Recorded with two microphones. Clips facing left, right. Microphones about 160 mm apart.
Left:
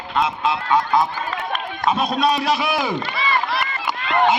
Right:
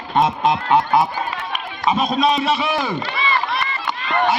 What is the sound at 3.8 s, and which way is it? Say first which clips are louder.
Run: left 2 dB; 20° left (ahead or behind).